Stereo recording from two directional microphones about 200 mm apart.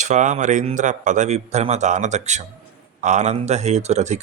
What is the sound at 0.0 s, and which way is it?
Speech, 35° right (ahead or behind).